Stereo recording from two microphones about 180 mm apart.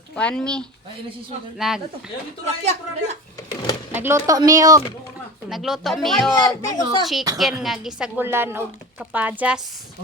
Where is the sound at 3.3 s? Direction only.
20° left (ahead or behind).